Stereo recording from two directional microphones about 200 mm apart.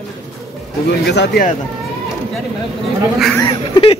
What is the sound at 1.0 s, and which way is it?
Speech, 60° left (ahead or behind).